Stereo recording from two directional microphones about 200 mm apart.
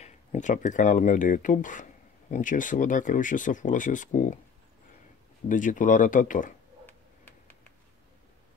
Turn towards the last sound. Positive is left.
turn(degrees=10)  # may be behind; listen again after turning